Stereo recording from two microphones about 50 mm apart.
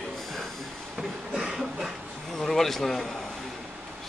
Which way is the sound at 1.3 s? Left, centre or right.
Centre.